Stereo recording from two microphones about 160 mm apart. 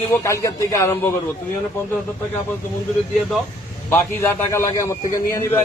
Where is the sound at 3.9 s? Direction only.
15° left (ahead or behind).